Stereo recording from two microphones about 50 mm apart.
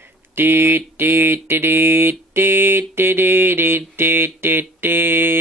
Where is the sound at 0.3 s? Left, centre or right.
Right.